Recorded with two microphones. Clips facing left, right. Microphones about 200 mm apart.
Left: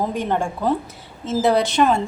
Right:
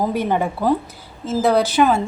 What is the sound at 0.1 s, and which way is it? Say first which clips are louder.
A woman's voice: right 2 dB; 10° right (ahead or behind).